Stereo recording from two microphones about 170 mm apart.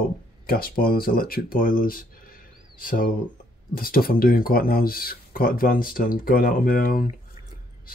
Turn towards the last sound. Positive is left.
turn(degrees=55)  # may be behind; listen again after turning